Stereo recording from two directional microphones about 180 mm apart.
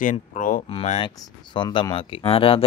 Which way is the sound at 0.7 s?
30° left (ahead or behind).